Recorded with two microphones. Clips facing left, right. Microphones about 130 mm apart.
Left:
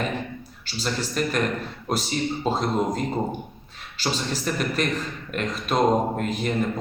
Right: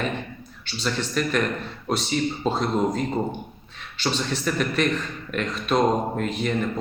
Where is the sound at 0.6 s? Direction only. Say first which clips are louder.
Right 1 dB; 35° left (ahead or behind).